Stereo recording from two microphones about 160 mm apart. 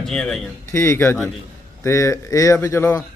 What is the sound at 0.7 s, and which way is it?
A man's voice, 15° left (ahead or behind).